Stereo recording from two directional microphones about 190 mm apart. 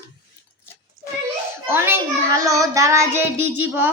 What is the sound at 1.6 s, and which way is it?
Child singing, 10° right (ahead or behind).